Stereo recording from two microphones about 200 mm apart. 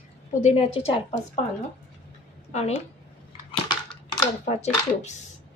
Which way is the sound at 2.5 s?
35° left (ahead or behind).